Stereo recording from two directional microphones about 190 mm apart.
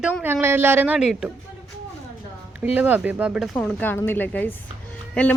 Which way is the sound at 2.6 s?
10° right (ahead or behind).